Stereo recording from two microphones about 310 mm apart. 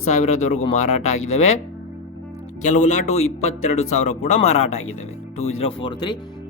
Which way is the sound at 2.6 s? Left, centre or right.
Left.